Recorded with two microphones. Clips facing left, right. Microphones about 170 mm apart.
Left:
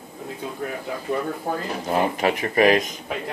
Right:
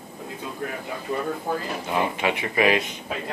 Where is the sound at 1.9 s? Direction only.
40° left (ahead or behind).